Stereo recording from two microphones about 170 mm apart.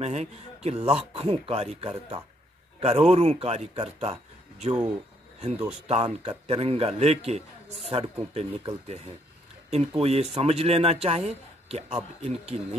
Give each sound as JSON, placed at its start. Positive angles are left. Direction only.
{"t": 0.0, "sound": "speech", "side_deg": -40}